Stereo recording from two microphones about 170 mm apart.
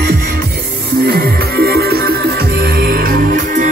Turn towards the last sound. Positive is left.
turn(degrees=-55)  # may be behind; listen again after turning